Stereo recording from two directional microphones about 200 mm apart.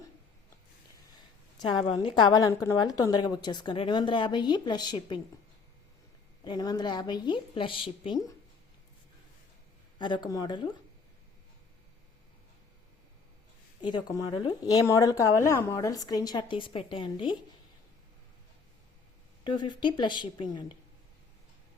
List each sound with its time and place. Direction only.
1.5 s a woman's voice: 20° left (ahead or behind)
6.4 s a woman's voice: 20° left (ahead or behind)
10.0 s a woman's voice: 20° left (ahead or behind)
13.8 s a woman's voice: 20° left (ahead or behind)
19.5 s a woman's voice: 25° left (ahead or behind)